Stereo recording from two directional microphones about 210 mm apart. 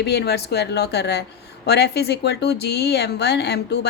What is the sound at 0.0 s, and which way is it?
Speech, 50° left (ahead or behind).